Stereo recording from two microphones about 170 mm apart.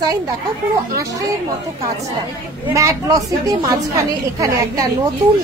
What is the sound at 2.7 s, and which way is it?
A woman's voice, 20° right (ahead or behind).